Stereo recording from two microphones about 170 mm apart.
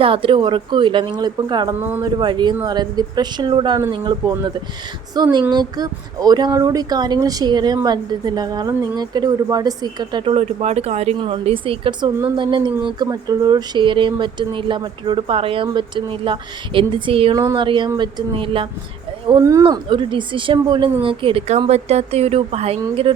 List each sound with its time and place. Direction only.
0.0 s a woman's voice: 30° right (ahead or behind)
1.8 s speech: 10° right (ahead or behind)
2.1 s a woman's voice: 25° right (ahead or behind)
17.3 s a woman's voice: 20° right (ahead or behind)
19.3 s a woman's voice: 20° right (ahead or behind)